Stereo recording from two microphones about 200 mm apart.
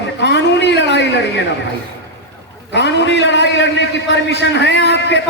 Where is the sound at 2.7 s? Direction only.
60° left (ahead or behind).